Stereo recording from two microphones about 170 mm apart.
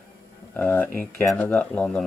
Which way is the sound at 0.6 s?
10° left (ahead or behind).